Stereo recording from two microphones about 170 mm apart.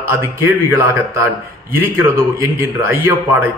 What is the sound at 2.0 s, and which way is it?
A man's voice, 15° right (ahead or behind).